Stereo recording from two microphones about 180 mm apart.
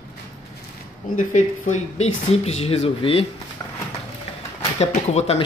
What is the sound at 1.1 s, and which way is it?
Speech, 45° left (ahead or behind).